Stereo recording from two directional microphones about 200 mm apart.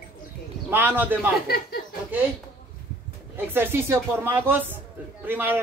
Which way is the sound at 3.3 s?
10° right (ahead or behind).